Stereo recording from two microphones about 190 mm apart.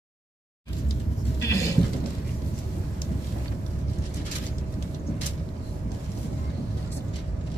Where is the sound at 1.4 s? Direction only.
15° left (ahead or behind).